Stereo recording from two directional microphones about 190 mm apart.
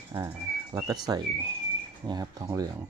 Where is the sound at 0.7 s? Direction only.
20° right (ahead or behind).